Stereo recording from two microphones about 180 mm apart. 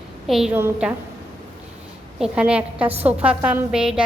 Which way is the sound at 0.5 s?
15° right (ahead or behind).